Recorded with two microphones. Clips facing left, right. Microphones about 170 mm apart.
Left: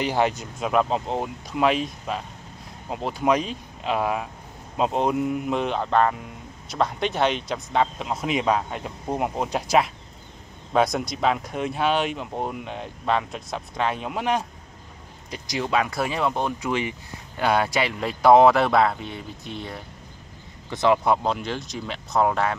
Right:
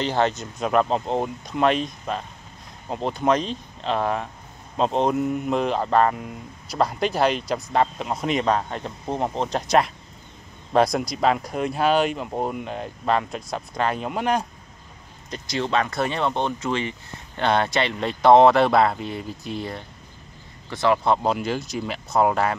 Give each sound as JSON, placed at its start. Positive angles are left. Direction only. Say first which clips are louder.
{"t": 0.0, "sound": "speech", "louder": "even", "side_deg": 15}
{"t": 15.2, "sound": "speech", "louder": "right 2 dB", "side_deg": 15}
{"t": 20.7, "sound": "speech", "louder": "even", "side_deg": 20}
{"t": 21.2, "sound": "speech", "louder": "right 3 dB", "side_deg": -5}